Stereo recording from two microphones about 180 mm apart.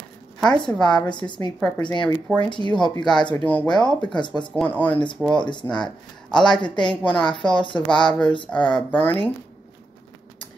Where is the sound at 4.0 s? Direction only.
25° left (ahead or behind).